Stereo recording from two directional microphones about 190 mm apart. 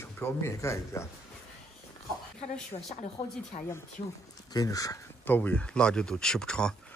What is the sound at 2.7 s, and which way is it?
Speech, 35° left (ahead or behind).